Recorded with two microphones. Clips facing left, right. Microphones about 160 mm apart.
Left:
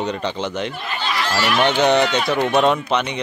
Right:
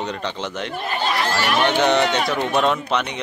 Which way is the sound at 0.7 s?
45° right (ahead or behind).